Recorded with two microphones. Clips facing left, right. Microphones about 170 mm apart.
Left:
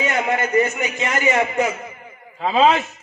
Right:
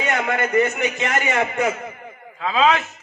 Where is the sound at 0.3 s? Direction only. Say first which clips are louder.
Right 1 dB; 60° right (ahead or behind).